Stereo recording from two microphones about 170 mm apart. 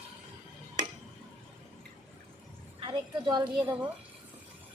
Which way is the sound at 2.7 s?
25° right (ahead or behind).